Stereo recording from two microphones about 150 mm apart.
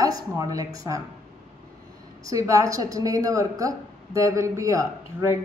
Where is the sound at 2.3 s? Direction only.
20° right (ahead or behind).